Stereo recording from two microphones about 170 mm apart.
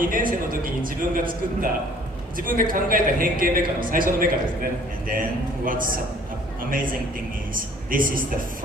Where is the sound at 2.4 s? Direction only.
55° right (ahead or behind).